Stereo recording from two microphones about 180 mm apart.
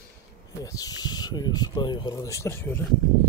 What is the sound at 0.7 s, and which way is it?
Speech, 20° left (ahead or behind).